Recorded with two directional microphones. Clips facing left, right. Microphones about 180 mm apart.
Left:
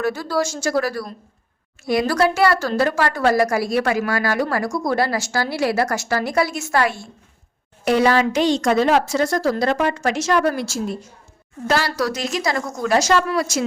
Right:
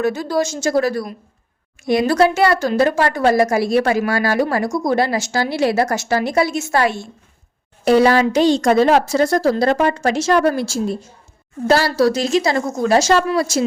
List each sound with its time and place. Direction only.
0.0 s a woman's voice: 20° right (ahead or behind)
7.9 s a woman's voice: 35° right (ahead or behind)